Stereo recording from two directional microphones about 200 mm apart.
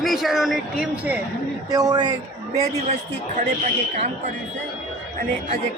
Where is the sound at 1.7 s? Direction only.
20° right (ahead or behind).